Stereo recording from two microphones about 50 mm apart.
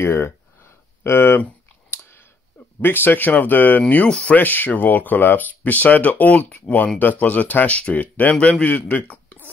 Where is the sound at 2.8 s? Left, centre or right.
Left.